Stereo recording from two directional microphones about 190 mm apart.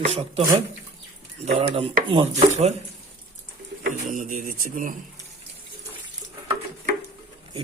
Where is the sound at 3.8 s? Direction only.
45° right (ahead or behind).